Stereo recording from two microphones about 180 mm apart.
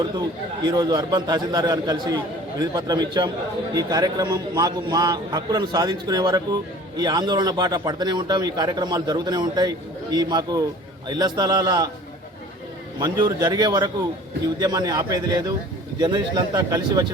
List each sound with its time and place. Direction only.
0.6 s a man's voice: 20° right (ahead or behind)
13.0 s a man's voice: 20° right (ahead or behind)